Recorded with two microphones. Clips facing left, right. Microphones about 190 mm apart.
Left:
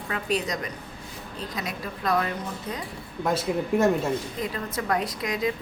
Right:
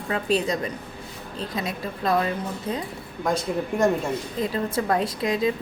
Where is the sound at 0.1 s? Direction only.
30° right (ahead or behind).